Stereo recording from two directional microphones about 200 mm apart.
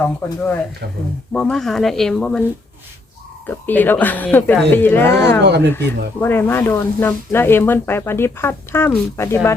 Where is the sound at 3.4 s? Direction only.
10° left (ahead or behind).